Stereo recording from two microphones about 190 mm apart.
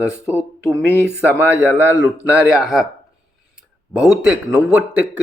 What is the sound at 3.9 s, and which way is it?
A man's voice, 5° right (ahead or behind).